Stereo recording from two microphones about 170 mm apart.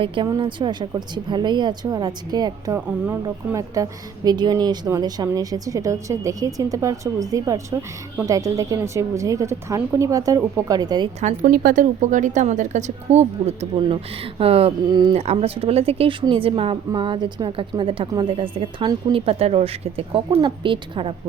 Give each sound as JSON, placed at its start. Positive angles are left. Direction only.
{"t": 0.0, "sound": "a woman's voice", "side_deg": -30}
{"t": 11.2, "sound": "a woman's voice", "side_deg": -45}
{"t": 11.5, "sound": "a woman's voice", "side_deg": -55}
{"t": 15.2, "sound": "a woman's voice", "side_deg": -40}